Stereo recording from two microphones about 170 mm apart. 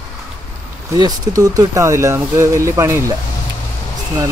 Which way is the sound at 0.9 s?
20° right (ahead or behind).